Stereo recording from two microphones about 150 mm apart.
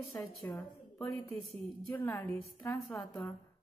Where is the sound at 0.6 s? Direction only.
5° left (ahead or behind).